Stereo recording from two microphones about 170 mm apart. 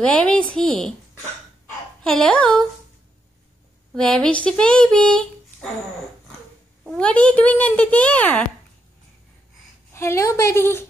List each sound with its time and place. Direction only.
0.0 s a child's voice: 5° left (ahead or behind)
2.0 s a child's voice: 5° left (ahead or behind)
3.9 s speech: 5° left (ahead or behind)
6.8 s a child's voice: 5° left (ahead or behind)
9.9 s a child's voice: 15° left (ahead or behind)